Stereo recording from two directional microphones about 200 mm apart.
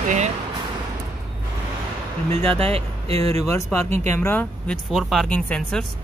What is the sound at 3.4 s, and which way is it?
Speech, 15° left (ahead or behind).